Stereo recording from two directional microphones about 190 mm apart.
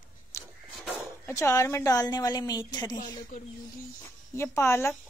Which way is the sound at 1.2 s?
15° left (ahead or behind).